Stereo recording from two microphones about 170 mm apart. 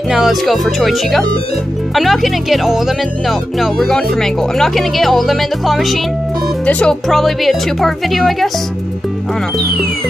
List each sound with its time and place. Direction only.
0.1 s speech: centre (ahead or behind)